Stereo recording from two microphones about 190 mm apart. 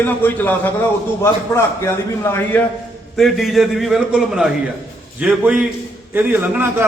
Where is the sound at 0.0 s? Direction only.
10° left (ahead or behind).